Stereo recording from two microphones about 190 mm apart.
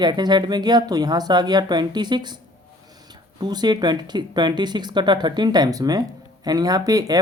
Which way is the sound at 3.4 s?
20° right (ahead or behind).